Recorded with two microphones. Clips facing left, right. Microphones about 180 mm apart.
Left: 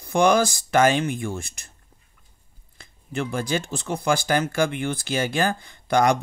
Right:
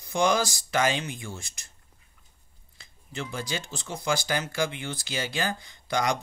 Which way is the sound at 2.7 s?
55° left (ahead or behind).